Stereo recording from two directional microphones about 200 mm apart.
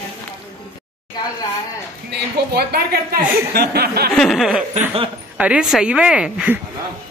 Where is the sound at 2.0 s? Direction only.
50° right (ahead or behind).